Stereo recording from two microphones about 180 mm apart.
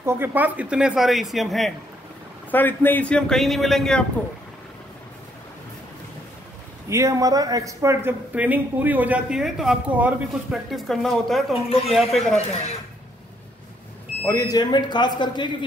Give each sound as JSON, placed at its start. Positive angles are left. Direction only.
{"t": 0.0, "sound": "speech", "side_deg": -10}
{"t": 2.5, "sound": "speech", "side_deg": 10}
{"t": 6.9, "sound": "speech", "side_deg": -15}
{"t": 14.2, "sound": "speech", "side_deg": 15}